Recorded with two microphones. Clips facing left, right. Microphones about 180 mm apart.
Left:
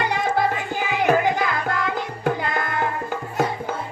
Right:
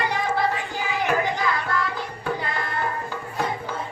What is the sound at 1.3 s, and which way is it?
Music, 55° left (ahead or behind).